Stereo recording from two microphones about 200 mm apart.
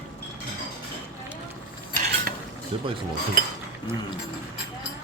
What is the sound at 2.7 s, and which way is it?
Speech, 25° right (ahead or behind).